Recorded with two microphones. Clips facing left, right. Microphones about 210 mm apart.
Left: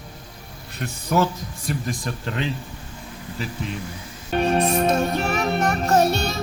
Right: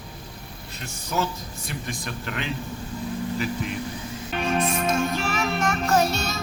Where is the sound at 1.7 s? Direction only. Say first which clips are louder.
Left 6 dB; 35° left (ahead or behind).